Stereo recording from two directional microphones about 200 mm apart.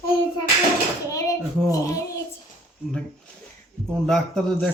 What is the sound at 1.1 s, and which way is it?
A child's voice, 15° left (ahead or behind).